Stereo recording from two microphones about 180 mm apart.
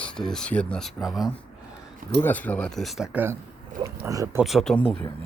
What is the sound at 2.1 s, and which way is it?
Speech, 10° left (ahead or behind).